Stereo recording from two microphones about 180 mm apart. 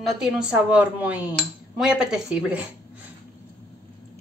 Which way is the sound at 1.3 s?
5° right (ahead or behind).